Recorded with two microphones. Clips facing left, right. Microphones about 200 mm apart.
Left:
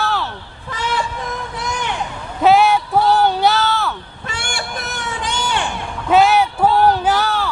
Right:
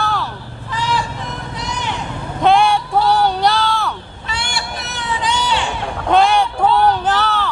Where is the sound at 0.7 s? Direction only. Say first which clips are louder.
Right 1 dB; 55° left (ahead or behind).